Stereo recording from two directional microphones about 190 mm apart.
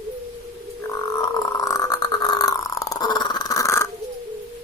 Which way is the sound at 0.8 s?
20° left (ahead or behind).